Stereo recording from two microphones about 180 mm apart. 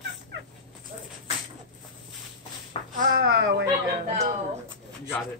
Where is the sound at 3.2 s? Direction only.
60° right (ahead or behind).